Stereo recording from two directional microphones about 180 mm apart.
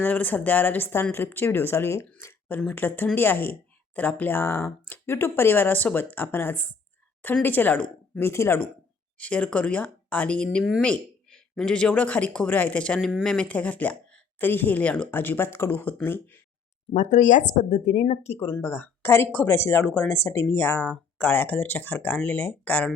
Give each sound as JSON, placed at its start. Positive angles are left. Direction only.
{"t": 0.0, "sound": "speech", "side_deg": 10}
{"t": 16.9, "sound": "speech", "side_deg": 40}
{"t": 18.5, "sound": "speech", "side_deg": 15}